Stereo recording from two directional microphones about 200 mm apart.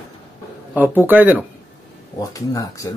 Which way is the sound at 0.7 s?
10° right (ahead or behind).